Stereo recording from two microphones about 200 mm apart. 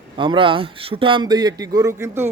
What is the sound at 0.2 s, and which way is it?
A man's voice, 25° right (ahead or behind).